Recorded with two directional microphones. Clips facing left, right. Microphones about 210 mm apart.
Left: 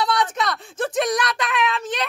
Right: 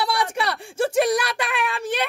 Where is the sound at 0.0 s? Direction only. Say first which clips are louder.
Left 1 dB; 10° right (ahead or behind).